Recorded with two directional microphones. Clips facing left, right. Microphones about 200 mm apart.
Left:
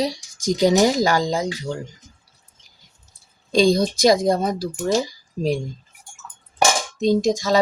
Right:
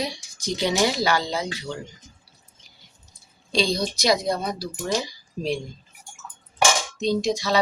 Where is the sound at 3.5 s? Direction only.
50° left (ahead or behind).